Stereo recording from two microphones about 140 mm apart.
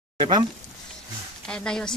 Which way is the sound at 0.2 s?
30° right (ahead or behind).